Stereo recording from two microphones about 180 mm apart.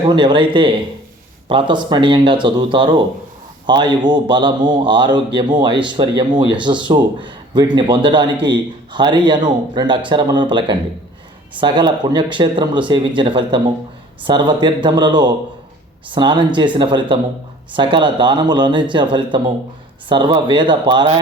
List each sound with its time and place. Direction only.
0.1 s a man's voice: 25° right (ahead or behind)